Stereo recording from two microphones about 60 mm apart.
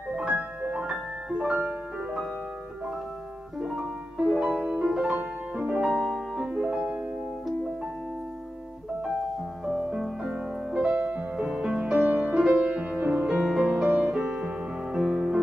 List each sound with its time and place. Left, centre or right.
0.1 s music: centre
3.5 s music: centre
5.9 s music: centre
6.4 s music: centre
9.7 s music: centre
10.8 s music: right
13.4 s music: centre
13.8 s music: right
14.1 s music: centre